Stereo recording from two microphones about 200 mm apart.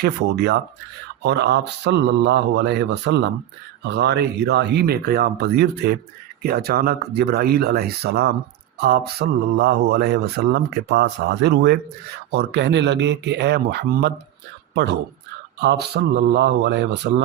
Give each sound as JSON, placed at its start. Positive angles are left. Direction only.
{"t": 0.0, "sound": "speech", "side_deg": -55}
{"t": 15.6, "sound": "speech", "side_deg": -55}